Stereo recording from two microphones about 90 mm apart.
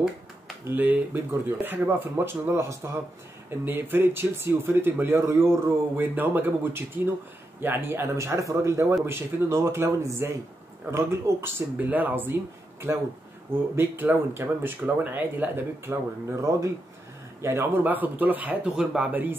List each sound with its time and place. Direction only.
0.7 s speech: 20° right (ahead or behind)
11.7 s speech: 20° right (ahead or behind)
12.9 s speech: 35° right (ahead or behind); by 19.0 s 10° right (ahead or behind)